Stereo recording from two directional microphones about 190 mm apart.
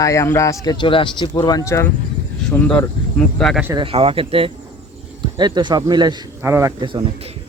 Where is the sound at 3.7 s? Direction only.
30° right (ahead or behind); by 6.7 s 15° right (ahead or behind).